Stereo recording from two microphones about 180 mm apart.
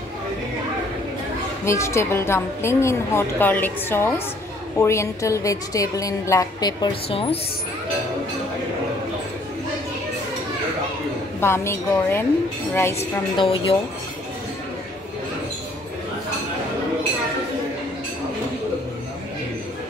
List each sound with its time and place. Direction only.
1.6 s a woman's voice: 15° left (ahead or behind); by 7.3 s 30° left (ahead or behind)
11.4 s a woman's voice: 15° left (ahead or behind)
12.9 s a woman's voice: 30° left (ahead or behind)